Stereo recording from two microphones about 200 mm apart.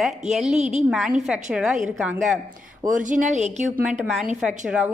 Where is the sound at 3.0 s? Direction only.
35° right (ahead or behind).